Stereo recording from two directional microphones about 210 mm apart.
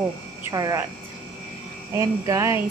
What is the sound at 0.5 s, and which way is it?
Speech, 15° right (ahead or behind).